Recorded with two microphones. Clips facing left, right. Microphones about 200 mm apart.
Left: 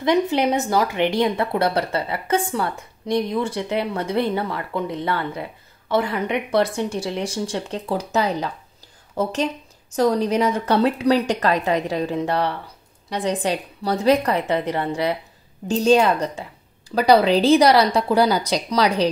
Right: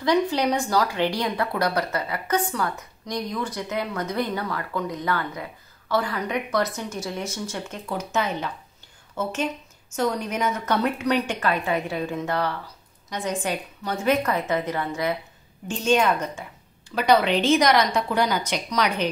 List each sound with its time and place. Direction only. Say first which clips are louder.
0.0 s a woman's voice: left 3 dB; 25° left (ahead or behind)